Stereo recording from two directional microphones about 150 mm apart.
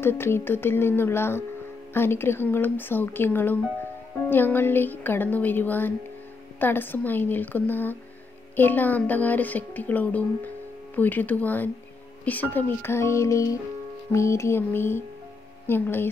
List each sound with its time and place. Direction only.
0.0 s speech: 15° left (ahead or behind)